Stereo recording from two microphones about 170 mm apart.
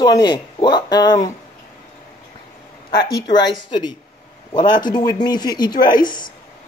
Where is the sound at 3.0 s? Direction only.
25° left (ahead or behind).